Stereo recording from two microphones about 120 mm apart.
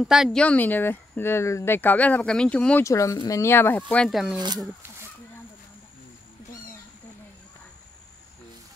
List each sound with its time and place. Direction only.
0.0 s speech: 5° right (ahead or behind)
0.4 s speech: 15° left (ahead or behind)
2.8 s speech: 25° left (ahead or behind)
3.9 s speech: 5° left (ahead or behind)
4.4 s speech: 35° right (ahead or behind)